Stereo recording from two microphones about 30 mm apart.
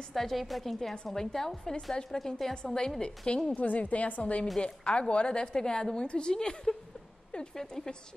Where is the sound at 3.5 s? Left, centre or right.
Left.